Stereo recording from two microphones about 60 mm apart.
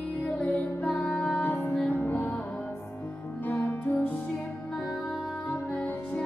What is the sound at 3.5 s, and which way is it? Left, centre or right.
Music, left.